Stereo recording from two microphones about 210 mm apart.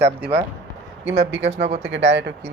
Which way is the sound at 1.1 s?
60° right (ahead or behind).